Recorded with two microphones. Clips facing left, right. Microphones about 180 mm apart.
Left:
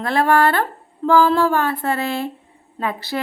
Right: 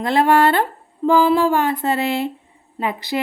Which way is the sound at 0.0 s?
20° right (ahead or behind).